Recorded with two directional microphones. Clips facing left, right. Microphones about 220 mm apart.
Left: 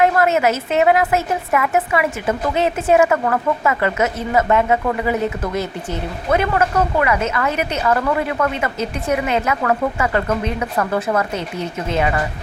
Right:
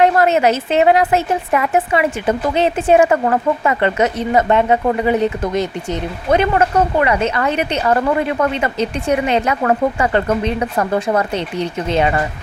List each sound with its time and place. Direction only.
0.0 s a sound: 30° right (ahead or behind)
0.7 s speech: 30° right (ahead or behind)
11.5 s speech: 5° left (ahead or behind)
11.9 s speech: 30° right (ahead or behind)